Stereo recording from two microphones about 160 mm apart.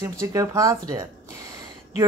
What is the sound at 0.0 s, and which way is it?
A woman's voice, 20° right (ahead or behind).